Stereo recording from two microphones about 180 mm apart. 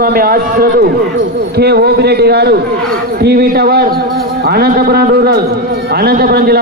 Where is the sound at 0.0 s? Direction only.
55° right (ahead or behind).